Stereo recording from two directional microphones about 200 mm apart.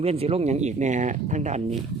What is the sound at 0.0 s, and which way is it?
Speech, 30° right (ahead or behind).